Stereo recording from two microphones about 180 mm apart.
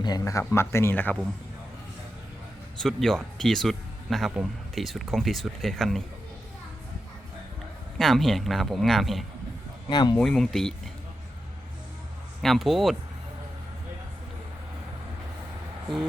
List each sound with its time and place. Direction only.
0.0 s a man's voice: 20° left (ahead or behind)
2.7 s speech: centre (ahead or behind)
7.9 s speech: centre (ahead or behind)
9.9 s speech: 25° left (ahead or behind)
10.2 s speech: 5° left (ahead or behind)
12.4 s speech: centre (ahead or behind)